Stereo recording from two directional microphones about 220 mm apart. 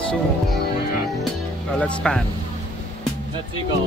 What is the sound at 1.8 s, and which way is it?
Speech, 5° left (ahead or behind).